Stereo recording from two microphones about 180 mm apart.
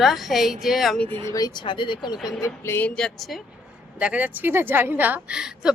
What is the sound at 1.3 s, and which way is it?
Speech, 20° left (ahead or behind).